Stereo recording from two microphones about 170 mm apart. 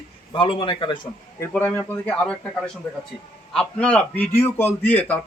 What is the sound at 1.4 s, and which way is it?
Speech, 10° left (ahead or behind).